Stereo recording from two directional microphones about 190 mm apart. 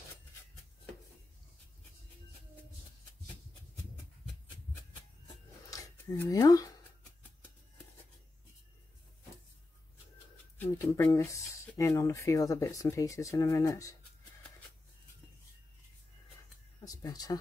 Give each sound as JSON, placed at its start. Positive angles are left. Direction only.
{"t": 5.7, "sound": "dishes", "side_deg": 15}
{"t": 10.6, "sound": "speech", "side_deg": 15}
{"t": 16.8, "sound": "speech", "side_deg": 20}